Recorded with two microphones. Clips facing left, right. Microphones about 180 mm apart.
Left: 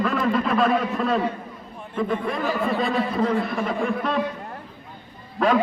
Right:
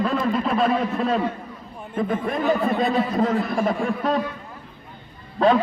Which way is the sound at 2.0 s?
45° right (ahead or behind).